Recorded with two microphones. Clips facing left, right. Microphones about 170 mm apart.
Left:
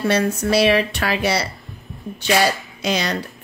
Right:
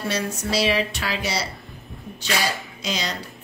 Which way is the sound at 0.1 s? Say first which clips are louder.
Left 7 dB; 60° left (ahead or behind).